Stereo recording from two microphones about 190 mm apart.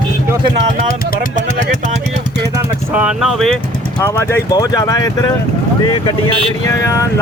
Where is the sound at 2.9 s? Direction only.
5° right (ahead or behind).